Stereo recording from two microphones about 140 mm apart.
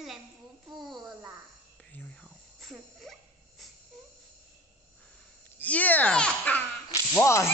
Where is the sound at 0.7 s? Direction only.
Centre (ahead or behind).